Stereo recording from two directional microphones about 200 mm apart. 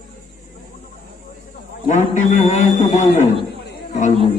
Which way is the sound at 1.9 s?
35° left (ahead or behind).